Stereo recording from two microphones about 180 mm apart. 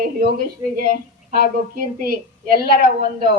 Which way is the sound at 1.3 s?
50° right (ahead or behind).